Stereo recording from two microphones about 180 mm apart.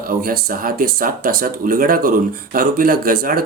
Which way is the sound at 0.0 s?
55° right (ahead or behind).